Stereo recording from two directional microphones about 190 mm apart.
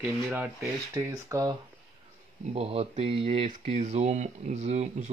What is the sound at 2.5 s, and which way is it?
Speech, 35° right (ahead or behind).